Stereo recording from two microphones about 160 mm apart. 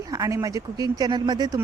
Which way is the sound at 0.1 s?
20° right (ahead or behind).